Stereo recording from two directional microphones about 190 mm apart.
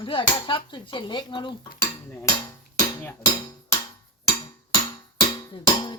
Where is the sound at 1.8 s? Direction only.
10° left (ahead or behind).